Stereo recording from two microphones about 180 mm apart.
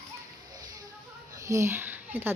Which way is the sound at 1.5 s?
15° right (ahead or behind).